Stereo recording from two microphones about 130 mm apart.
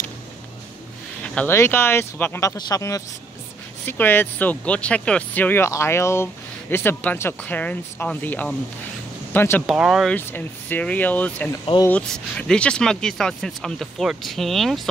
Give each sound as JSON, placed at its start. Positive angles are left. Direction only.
{"t": 1.2, "sound": "a sound", "side_deg": 10}
{"t": 1.5, "sound": "speech", "side_deg": 20}
{"t": 2.5, "sound": "speech", "side_deg": 30}
{"t": 3.8, "sound": "speech", "side_deg": 15}
{"t": 9.7, "sound": "speech", "side_deg": -5}
{"t": 10.0, "sound": "speech", "side_deg": 15}